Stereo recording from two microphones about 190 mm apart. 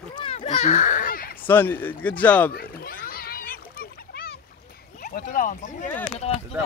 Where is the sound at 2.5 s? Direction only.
50° left (ahead or behind).